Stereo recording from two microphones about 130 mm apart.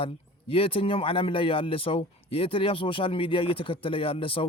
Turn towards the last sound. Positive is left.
turn(degrees=45)  # may be behind; listen again after turning